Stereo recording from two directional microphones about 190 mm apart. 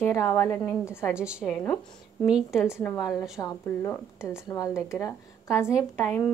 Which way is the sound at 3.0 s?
15° left (ahead or behind).